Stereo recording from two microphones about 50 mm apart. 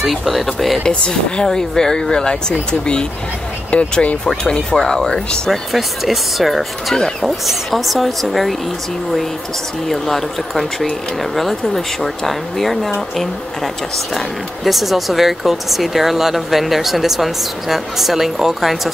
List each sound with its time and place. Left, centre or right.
0.0 s speech: centre
0.8 s speech: centre
4.3 s speech: centre
5.5 s speech: centre
9.8 s speech: centre
14.1 s speech: centre